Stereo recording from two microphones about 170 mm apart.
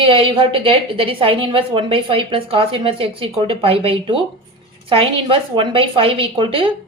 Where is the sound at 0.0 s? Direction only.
30° right (ahead or behind).